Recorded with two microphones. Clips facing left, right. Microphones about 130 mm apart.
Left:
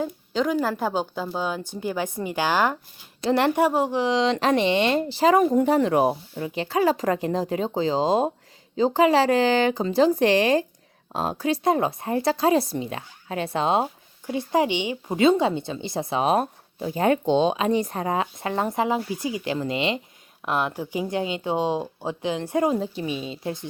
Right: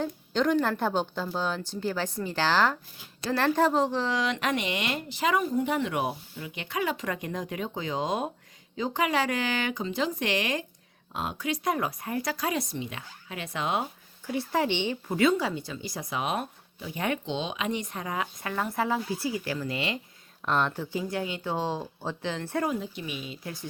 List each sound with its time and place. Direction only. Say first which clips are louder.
0.0 s a woman's voice: left 2 dB; 5° left (ahead or behind); by 13.8 s 30° left (ahead or behind)
14.3 s a woman's voice: left 5 dB; 20° left (ahead or behind)
20.4 s speech: left 2 dB; 10° left (ahead or behind)
22.7 s a woman's voice: left 7 dB; 30° left (ahead or behind)